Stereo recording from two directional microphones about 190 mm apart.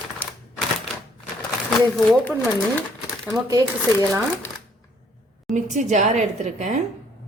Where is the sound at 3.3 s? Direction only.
20° right (ahead or behind).